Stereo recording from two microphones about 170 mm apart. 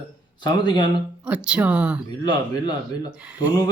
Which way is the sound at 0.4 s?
25° left (ahead or behind).